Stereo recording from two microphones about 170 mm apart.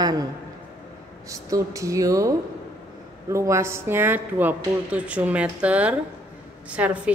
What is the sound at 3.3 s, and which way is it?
A woman's voice, 15° right (ahead or behind).